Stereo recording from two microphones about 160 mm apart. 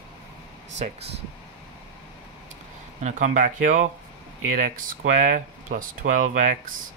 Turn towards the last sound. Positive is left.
turn(degrees=-50)  # may be behind; listen again after turning